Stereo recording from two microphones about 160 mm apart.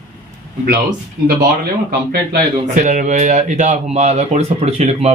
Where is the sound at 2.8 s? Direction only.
50° right (ahead or behind).